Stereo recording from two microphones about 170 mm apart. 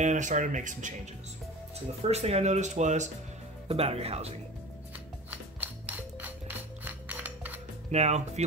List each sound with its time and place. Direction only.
0.0 s speech: 45° right (ahead or behind)
2.0 s speech: 40° right (ahead or behind)
5.3 s music: 10° right (ahead or behind)
7.9 s speech: 40° right (ahead or behind)